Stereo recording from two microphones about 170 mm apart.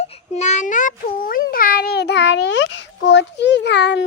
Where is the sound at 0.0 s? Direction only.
45° left (ahead or behind).